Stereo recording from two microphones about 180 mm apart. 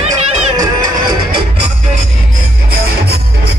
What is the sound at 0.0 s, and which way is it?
Music, 35° right (ahead or behind).